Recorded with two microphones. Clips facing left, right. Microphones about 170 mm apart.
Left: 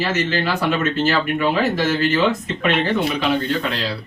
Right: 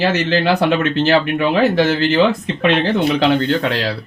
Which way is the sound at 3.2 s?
80° right.